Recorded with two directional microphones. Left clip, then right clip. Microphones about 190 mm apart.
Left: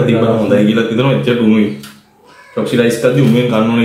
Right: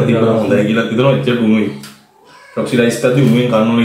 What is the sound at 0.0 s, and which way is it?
A man's voice, 20° left (ahead or behind).